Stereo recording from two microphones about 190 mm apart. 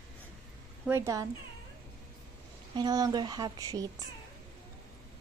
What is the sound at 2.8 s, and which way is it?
Speech, 20° right (ahead or behind).